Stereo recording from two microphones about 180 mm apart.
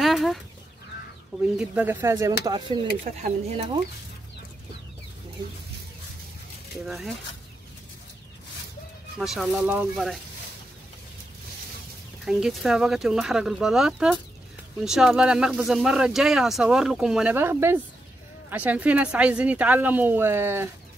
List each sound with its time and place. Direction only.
0.0 s fowl: centre (ahead or behind)
1.4 s speech: 5° right (ahead or behind); by 2.9 s 25° right (ahead or behind)
3.2 s speech: 40° right (ahead or behind)
9.2 s speech: centre (ahead or behind)
12.3 s speech: 5° right (ahead or behind)